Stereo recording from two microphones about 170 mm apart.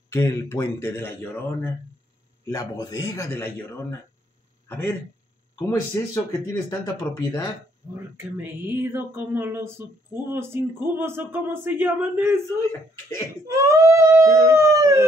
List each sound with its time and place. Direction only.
0.1 s a man's voice: 15° left (ahead or behind)
4.6 s a man's voice: 10° left (ahead or behind)
8.2 s speech: 10° right (ahead or behind)
13.5 s baby cry: 20° right (ahead or behind)